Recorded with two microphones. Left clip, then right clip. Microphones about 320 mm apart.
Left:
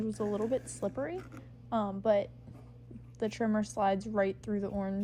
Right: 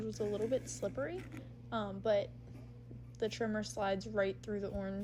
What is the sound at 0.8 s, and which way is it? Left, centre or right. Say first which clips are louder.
A woman's voice: left 3 dB; left.